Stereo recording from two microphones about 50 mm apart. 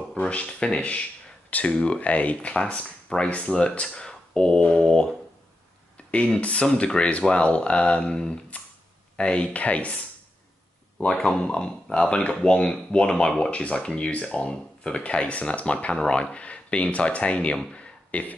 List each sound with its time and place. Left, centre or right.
0.3 s speech: left
2.0 s speech: left
6.1 s speech: left
8.0 s speech: centre
11.1 s speech: centre
17.7 s a sound: left